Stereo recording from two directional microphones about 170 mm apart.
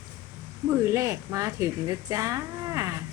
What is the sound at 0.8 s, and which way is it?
Speech, 20° right (ahead or behind).